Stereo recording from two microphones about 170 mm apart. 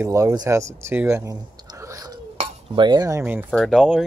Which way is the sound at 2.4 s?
25° right (ahead or behind).